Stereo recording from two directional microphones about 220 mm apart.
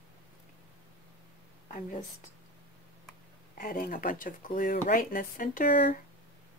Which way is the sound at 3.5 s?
40° left (ahead or behind).